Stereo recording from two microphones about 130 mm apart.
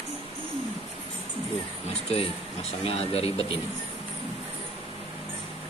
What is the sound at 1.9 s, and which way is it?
Speech, 50° left (ahead or behind).